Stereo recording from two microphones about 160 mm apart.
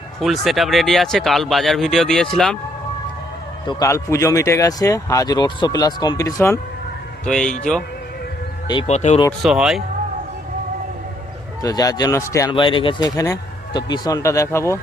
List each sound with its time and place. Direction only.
0.2 s speech: centre (ahead or behind)
3.7 s speech: 20° left (ahead or behind)
7.3 s speech: 5° left (ahead or behind)
8.9 s speech: 45° left (ahead or behind)
9.4 s speech: 5° right (ahead or behind)
11.6 s speech: 25° left (ahead or behind)